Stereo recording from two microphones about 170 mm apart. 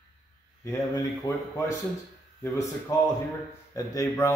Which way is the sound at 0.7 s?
20° left (ahead or behind).